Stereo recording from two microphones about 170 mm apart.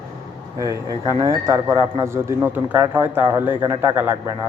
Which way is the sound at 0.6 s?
20° right (ahead or behind).